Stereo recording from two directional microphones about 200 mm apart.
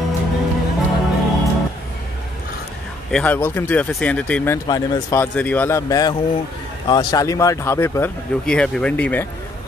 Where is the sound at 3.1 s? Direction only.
5° left (ahead or behind).